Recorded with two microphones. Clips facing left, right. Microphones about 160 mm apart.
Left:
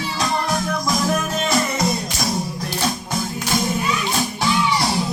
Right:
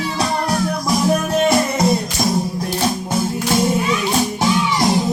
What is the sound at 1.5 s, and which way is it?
Music, 25° right (ahead or behind).